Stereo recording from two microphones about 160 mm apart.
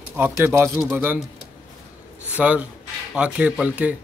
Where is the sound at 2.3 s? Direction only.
10° right (ahead or behind).